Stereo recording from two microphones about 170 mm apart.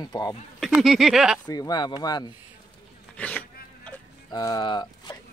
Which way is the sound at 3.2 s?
10° left (ahead or behind).